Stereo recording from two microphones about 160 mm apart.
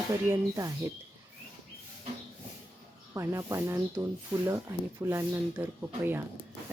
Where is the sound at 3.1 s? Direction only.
20° right (ahead or behind).